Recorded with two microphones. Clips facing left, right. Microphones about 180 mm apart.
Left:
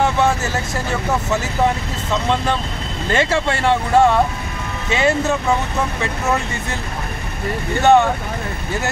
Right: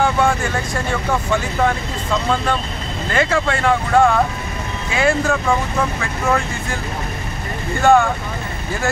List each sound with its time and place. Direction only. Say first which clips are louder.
0.2 s vehicle: even; 5° left (ahead or behind)
3.1 s speech: even; 25° left (ahead or behind)
7.8 s speech: even; 20° left (ahead or behind)